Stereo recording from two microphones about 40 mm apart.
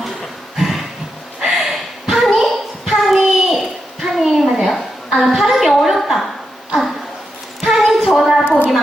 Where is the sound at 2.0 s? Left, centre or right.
Centre.